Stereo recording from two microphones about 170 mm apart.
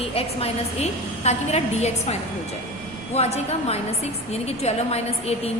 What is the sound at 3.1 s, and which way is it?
A woman's voice, 40° left (ahead or behind).